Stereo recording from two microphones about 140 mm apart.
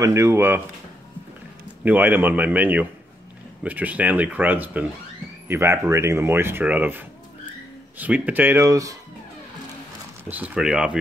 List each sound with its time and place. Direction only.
0.0 s speech: 20° right (ahead or behind)
1.9 s speech: 15° right (ahead or behind)
10.3 s speech: 10° right (ahead or behind)